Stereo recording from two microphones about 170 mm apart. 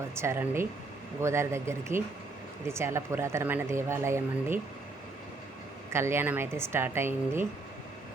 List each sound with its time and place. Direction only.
0.2 s speech: 15° right (ahead or behind)
5.9 s speech: 15° right (ahead or behind)